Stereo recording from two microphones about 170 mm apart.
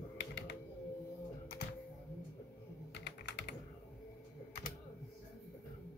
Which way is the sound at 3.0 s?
80° left.